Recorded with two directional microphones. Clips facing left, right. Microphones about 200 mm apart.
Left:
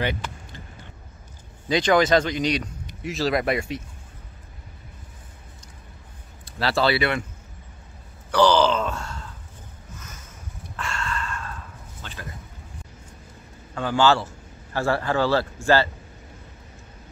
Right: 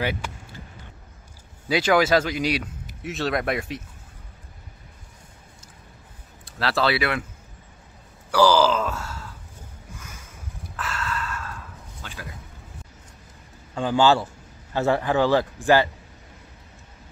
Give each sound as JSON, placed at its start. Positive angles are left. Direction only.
{"t": 0.0, "sound": "vehicle", "side_deg": -5}
{"t": 1.7, "sound": "speech", "side_deg": -5}
{"t": 6.4, "sound": "speech", "side_deg": 0}
{"t": 8.3, "sound": "groan", "side_deg": -5}
{"t": 9.9, "sound": "a sound", "side_deg": -10}
{"t": 13.7, "sound": "a man's voice", "side_deg": -15}